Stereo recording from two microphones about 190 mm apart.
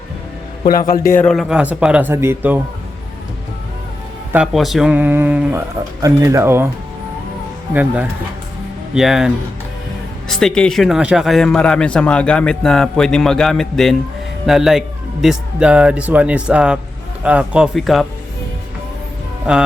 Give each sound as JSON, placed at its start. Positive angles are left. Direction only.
{"t": 0.7, "sound": "a man's voice", "side_deg": 50}
{"t": 1.1, "sound": "speech", "side_deg": 5}
{"t": 4.3, "sound": "speech", "side_deg": -5}
{"t": 7.7, "sound": "speech", "side_deg": -10}
{"t": 19.5, "sound": "speech", "side_deg": -5}